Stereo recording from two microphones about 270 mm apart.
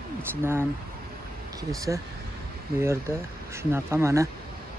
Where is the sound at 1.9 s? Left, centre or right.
Centre.